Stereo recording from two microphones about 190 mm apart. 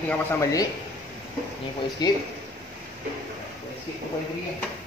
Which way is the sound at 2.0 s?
20° left (ahead or behind).